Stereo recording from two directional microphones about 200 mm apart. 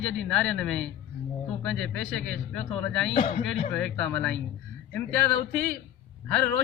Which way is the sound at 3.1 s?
30° left (ahead or behind).